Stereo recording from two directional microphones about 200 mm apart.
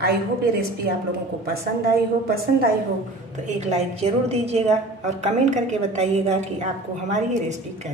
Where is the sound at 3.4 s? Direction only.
35° right (ahead or behind).